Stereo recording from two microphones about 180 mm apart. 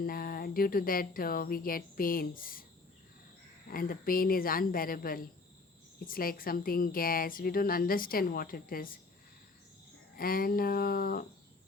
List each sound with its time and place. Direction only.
0.0 s a woman's voice: 55° left (ahead or behind)
3.7 s a woman's voice: 55° left (ahead or behind)
10.2 s speech: 55° left (ahead or behind)